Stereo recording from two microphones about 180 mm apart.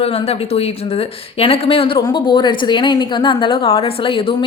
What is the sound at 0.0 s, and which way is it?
A woman's voice, 35° left (ahead or behind).